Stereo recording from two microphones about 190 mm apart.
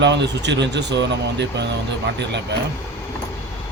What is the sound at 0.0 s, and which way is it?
Speech, 70° right (ahead or behind).